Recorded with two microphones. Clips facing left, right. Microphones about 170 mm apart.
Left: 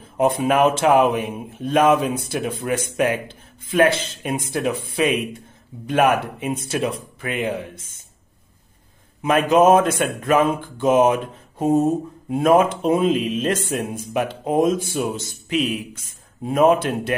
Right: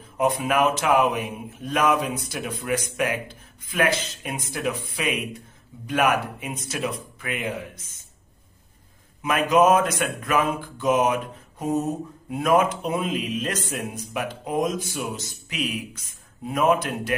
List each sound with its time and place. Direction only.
0.2 s a man's voice: 30° left (ahead or behind)
9.2 s a man's voice: 30° left (ahead or behind)